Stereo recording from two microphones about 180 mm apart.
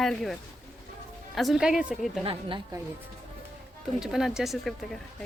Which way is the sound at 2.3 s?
30° right (ahead or behind).